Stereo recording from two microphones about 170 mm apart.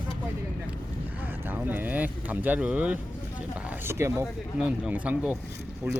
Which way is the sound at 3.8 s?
15° right (ahead or behind).